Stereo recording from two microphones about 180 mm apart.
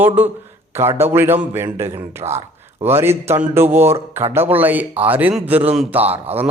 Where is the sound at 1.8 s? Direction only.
35° right (ahead or behind).